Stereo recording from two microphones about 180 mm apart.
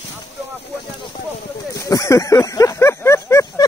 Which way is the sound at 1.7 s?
20° left (ahead or behind).